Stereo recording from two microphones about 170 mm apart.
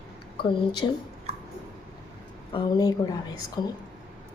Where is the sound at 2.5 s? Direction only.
20° left (ahead or behind).